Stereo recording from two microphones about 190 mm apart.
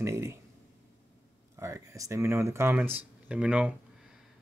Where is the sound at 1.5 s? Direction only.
15° right (ahead or behind).